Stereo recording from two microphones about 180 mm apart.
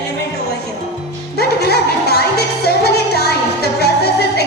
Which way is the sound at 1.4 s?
60° left (ahead or behind).